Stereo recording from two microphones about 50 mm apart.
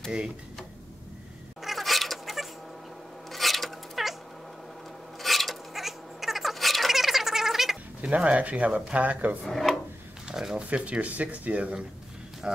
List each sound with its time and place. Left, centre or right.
1.6 s cat: centre
5.2 s cat: centre
8.0 s speech: right
9.4 s speech: centre
10.2 s speech: centre
10.6 s speech: right
12.4 s music: centre